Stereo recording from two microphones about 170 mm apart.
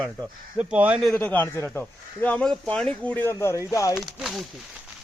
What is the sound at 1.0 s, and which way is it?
Speech, 10° left (ahead or behind).